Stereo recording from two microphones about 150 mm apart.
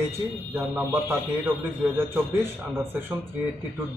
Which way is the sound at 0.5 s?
15° right (ahead or behind).